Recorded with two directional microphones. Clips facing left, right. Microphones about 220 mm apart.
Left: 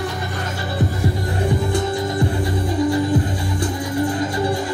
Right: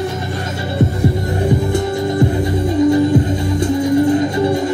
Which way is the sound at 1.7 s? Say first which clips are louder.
Right 4 dB; 25° right (ahead or behind).